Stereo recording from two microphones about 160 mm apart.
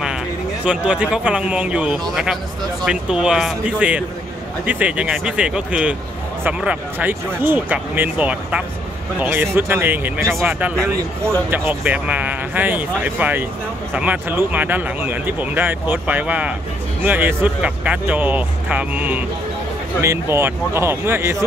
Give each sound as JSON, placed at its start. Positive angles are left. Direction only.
{"t": 0.7, "sound": "speech", "side_deg": -5}